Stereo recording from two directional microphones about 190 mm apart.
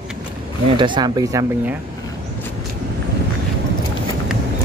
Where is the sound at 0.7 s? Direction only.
25° right (ahead or behind).